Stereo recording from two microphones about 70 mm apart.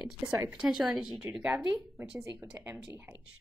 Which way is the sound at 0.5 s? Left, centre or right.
Centre.